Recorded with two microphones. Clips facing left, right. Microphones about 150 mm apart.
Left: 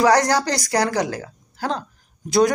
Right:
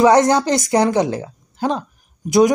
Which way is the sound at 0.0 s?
25° right (ahead or behind).